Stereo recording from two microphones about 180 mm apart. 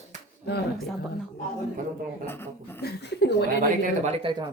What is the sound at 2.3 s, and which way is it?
Speech, 10° left (ahead or behind).